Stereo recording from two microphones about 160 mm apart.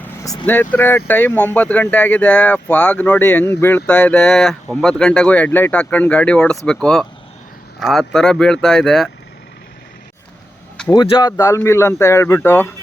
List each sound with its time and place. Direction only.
0.0 s speech: 15° left (ahead or behind)
10.9 s speech: 25° left (ahead or behind)